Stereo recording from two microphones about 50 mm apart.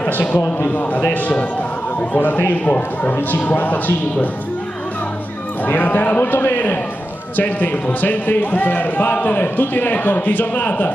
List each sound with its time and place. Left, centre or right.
0.0 s a man's voice: left
5.7 s a man's voice: left